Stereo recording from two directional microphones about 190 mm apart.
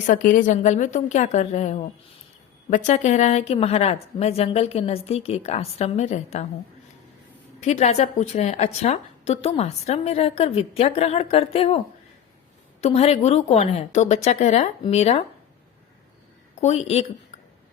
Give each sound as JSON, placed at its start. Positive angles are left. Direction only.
{"t": 0.1, "sound": "a woman's voice", "side_deg": 45}
{"t": 7.6, "sound": "a woman's voice", "side_deg": 35}
{"t": 12.8, "sound": "a woman's voice", "side_deg": 30}
{"t": 16.6, "sound": "a woman's voice", "side_deg": 35}